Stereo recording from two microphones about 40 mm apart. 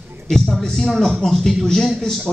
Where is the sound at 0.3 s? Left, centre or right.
Centre.